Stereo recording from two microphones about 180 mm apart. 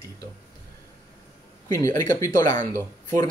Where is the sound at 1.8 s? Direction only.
45° right (ahead or behind).